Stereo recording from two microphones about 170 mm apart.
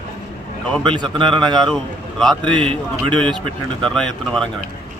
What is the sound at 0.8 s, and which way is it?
Speech, 30° right (ahead or behind).